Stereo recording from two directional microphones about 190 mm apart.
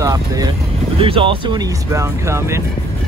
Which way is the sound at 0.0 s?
20° right (ahead or behind).